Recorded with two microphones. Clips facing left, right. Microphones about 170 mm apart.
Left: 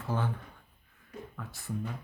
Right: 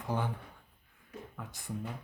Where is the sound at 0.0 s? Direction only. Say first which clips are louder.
Left 1 dB; 15° right (ahead or behind).